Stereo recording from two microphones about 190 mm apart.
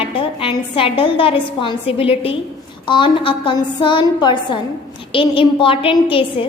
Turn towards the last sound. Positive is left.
turn(degrees=30)  # may be behind; listen again after turning